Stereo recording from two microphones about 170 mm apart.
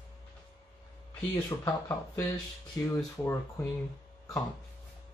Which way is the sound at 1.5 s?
20° left (ahead or behind).